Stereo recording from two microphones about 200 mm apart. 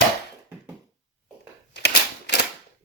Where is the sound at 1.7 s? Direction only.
60° left (ahead or behind).